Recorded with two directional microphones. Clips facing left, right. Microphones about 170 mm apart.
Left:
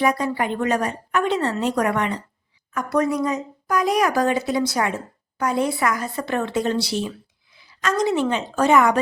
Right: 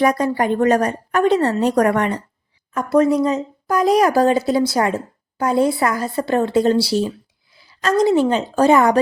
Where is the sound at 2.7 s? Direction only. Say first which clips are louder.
Right 6 dB; 25° right (ahead or behind).